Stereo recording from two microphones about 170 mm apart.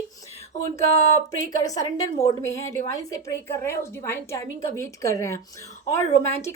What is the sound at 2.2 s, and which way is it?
A woman's voice, 15° left (ahead or behind).